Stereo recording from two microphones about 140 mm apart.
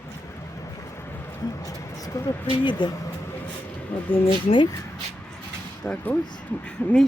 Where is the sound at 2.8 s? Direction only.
35° left (ahead or behind).